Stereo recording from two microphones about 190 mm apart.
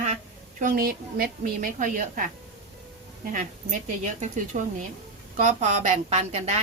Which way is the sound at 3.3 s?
40° right (ahead or behind).